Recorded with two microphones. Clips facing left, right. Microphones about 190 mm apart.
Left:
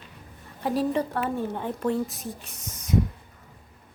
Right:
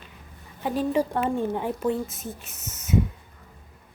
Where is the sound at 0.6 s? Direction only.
Centre (ahead or behind).